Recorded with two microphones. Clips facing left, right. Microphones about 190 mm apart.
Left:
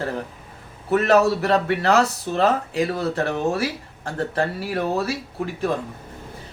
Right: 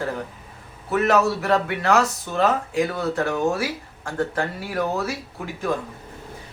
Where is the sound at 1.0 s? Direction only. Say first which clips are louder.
Left 2 dB; 35° left (ahead or behind).